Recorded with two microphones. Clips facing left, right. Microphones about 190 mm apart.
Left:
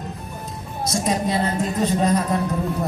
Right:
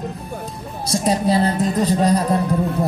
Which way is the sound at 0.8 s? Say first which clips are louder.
Right 3 dB; 35° right (ahead or behind).